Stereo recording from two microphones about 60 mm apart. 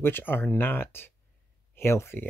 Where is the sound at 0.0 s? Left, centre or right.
Left.